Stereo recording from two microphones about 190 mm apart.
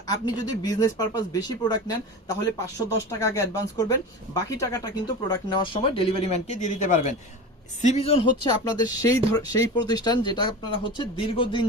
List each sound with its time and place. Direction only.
0.1 s speech: 20° left (ahead or behind)